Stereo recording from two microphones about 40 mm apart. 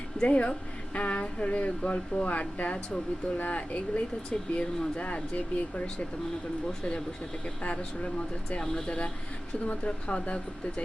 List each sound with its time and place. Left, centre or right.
0.2 s speech: left
3.3 s speech: left
7.6 s speech: left
9.6 s speech: left